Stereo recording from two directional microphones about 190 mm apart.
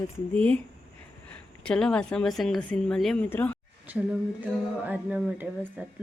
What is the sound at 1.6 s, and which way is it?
A woman's voice, 5° left (ahead or behind).